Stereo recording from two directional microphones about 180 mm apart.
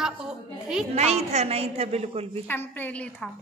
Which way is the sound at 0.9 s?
35° right (ahead or behind).